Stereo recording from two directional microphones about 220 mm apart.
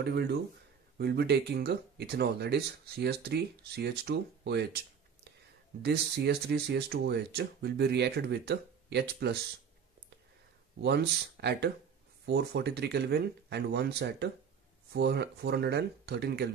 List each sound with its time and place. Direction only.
0.0 s speech: 45° right (ahead or behind)
5.8 s speech: 50° right (ahead or behind)
10.8 s speech: 50° right (ahead or behind)